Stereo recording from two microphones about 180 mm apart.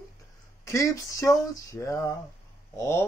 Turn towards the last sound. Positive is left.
turn(degrees=15)  # may be behind; listen again after turning